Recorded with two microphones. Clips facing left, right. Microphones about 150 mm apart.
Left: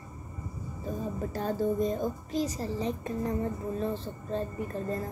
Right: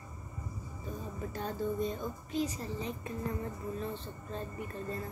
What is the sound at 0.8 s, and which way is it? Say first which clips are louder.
A woman's voice: left 7 dB; 40° left (ahead or behind).